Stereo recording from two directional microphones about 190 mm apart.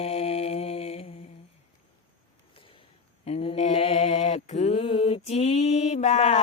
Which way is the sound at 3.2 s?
30° left (ahead or behind).